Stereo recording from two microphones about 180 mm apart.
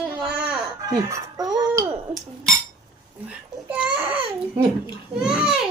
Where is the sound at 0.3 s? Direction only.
5° right (ahead or behind).